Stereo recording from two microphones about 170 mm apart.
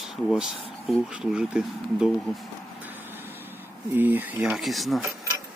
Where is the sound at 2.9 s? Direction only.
10° right (ahead or behind).